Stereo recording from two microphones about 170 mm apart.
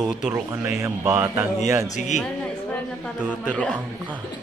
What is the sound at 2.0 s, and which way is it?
Speech, 45° left (ahead or behind).